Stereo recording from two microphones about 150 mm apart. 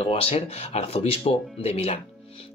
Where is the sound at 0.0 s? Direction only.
40° left (ahead or behind).